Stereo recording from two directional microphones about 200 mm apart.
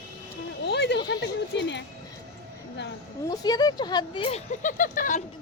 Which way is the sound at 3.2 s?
20° left (ahead or behind).